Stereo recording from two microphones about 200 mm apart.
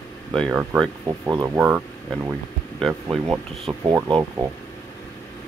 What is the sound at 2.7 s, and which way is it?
Speech, centre (ahead or behind).